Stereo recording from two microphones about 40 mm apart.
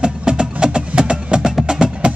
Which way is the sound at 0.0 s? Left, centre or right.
Right.